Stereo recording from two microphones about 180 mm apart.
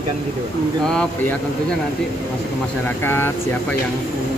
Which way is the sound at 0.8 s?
5° left (ahead or behind).